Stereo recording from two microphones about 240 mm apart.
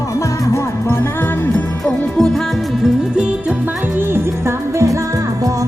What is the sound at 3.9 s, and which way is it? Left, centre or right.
Music, centre.